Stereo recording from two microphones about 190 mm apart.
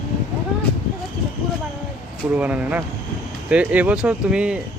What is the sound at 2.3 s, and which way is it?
Speech, 5° right (ahead or behind).